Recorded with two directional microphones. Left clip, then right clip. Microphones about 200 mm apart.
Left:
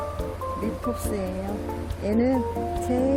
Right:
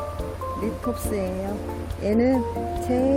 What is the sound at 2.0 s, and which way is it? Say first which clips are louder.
Speech: right 2 dB; 20° right (ahead or behind).